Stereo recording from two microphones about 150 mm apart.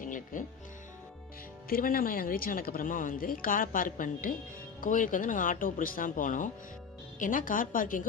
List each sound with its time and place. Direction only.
0.0 s music: 60° left (ahead or behind)
1.7 s speech: 70° left (ahead or behind)